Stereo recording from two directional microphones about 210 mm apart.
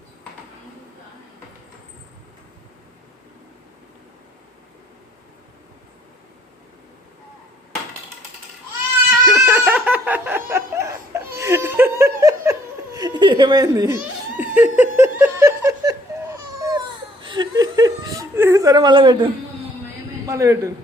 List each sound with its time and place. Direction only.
9.2 s laughter: 5° right (ahead or behind)
16.6 s baby cry: 15° right (ahead or behind)
17.2 s chuckle: 20° right (ahead or behind)
20.2 s a man's voice: 15° right (ahead or behind)